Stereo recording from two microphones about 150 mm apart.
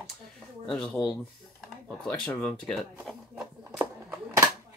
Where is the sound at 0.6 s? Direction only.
5° left (ahead or behind).